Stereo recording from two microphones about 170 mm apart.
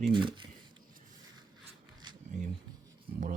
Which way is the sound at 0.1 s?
30° right (ahead or behind).